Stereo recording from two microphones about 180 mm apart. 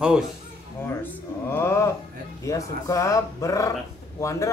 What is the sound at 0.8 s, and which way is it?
Speech, 10° left (ahead or behind).